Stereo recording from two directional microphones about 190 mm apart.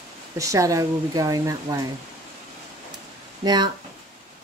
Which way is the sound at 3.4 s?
20° right (ahead or behind).